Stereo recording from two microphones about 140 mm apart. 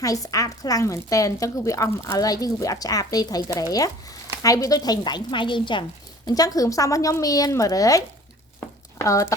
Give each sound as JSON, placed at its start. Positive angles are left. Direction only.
{"t": 0.0, "sound": "speech", "side_deg": 25}